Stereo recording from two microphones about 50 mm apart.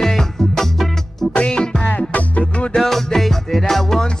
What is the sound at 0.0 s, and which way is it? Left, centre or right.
Music, centre.